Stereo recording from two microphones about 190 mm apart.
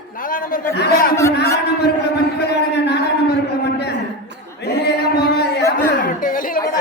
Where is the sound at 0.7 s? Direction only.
55° left (ahead or behind).